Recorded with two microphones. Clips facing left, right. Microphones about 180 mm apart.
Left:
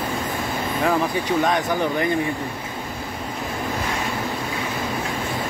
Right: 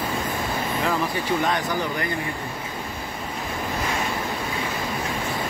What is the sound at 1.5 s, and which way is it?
Speech, 20° left (ahead or behind).